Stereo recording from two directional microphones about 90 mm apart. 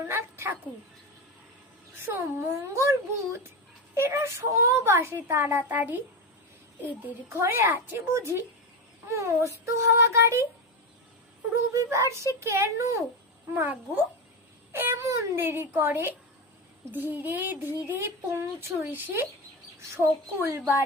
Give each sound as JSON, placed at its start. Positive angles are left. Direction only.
{"t": 0.0, "sound": "a sound", "side_deg": -25}
{"t": 2.0, "sound": "speech", "side_deg": -25}
{"t": 3.9, "sound": "speech", "side_deg": -30}
{"t": 7.3, "sound": "speech", "side_deg": -30}
{"t": 11.7, "sound": "speech", "side_deg": -35}
{"t": 13.5, "sound": "a child's voice", "side_deg": -20}